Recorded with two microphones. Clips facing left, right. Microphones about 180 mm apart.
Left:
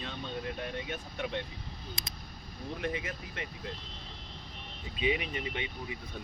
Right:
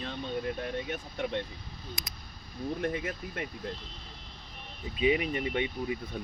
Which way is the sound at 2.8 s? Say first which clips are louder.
Right 3 dB; 50° right (ahead or behind).